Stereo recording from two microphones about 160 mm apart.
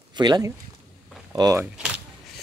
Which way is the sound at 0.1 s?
25° right (ahead or behind).